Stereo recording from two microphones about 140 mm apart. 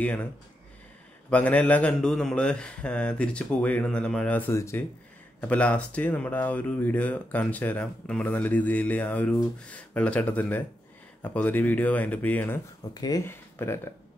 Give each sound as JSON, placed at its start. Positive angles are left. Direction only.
{"t": 0.0, "sound": "speech", "side_deg": 10}
{"t": 1.3, "sound": "speech", "side_deg": 10}
{"t": 12.9, "sound": "speech", "side_deg": 25}